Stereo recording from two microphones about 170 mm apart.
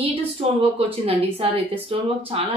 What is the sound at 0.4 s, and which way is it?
Speech, 35° right (ahead or behind).